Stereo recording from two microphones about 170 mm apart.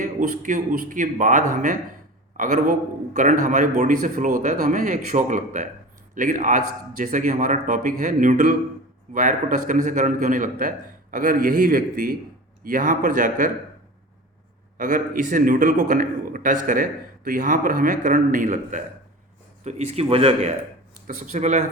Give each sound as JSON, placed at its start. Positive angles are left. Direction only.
{"t": 0.0, "sound": "a man's voice", "side_deg": -50}
{"t": 14.8, "sound": "a man's voice", "side_deg": -50}
{"t": 21.1, "sound": "a man's voice", "side_deg": -50}